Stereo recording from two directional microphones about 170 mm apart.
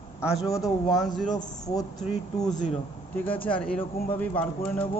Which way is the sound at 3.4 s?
5° left (ahead or behind).